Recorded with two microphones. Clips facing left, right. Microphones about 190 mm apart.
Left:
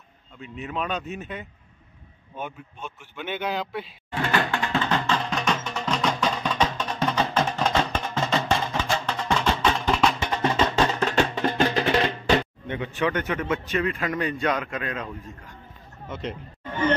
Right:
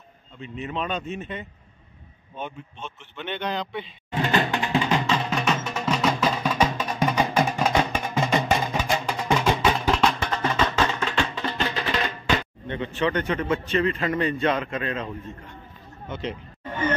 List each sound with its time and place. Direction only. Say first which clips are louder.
0.4 s a man's voice: right 1 dB; centre (ahead or behind)
4.1 s music: right 2 dB; 20° right (ahead or behind); by 10.0 s centre (ahead or behind)
10.2 s music: left 1 dB; 20° left (ahead or behind)
10.9 s music: left 3 dB; 40° left (ahead or behind)
11.9 s music: left 4 dB; 30° left (ahead or behind)
12.6 s a man's voice: right 1 dB; 10° left (ahead or behind)
16.1 s a man's voice: right 1 dB; centre (ahead or behind)